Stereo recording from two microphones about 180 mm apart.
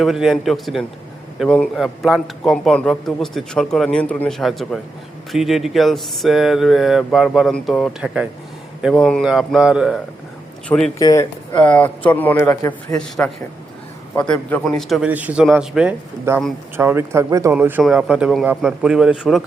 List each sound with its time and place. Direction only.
0.0 s a man's voice: centre (ahead or behind)
10.9 s speech: 15° left (ahead or behind)
11.6 s speech: 5° left (ahead or behind)
13.0 s a man's voice: 5° left (ahead or behind)